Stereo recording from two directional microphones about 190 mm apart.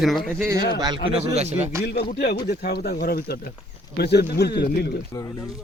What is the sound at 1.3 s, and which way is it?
Speech, 35° right (ahead or behind).